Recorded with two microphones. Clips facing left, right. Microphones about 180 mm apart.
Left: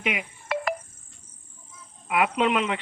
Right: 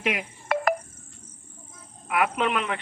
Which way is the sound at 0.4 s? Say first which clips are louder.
Right 4 dB; 50° right (ahead or behind).